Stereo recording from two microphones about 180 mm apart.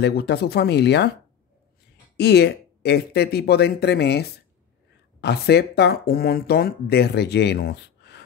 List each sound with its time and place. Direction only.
0.0 s speech: 65° left (ahead or behind)
2.1 s speech: 65° left (ahead or behind)